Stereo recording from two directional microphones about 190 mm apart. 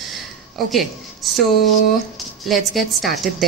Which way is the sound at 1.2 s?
Centre (ahead or behind).